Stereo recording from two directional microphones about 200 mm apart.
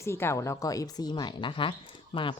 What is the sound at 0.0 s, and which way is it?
A woman's voice, 15° left (ahead or behind).